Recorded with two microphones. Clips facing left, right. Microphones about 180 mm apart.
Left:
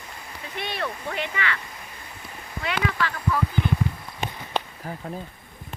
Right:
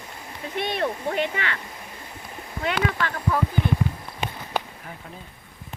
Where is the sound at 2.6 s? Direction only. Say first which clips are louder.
Right 2 dB; 50° right (ahead or behind).